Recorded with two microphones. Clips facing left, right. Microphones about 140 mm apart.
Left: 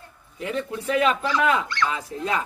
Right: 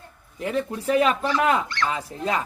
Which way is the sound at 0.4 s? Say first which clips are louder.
Right 2 dB; 35° right (ahead or behind).